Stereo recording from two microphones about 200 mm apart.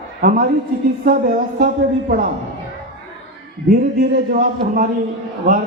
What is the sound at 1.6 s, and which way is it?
Speech, 45° right (ahead or behind).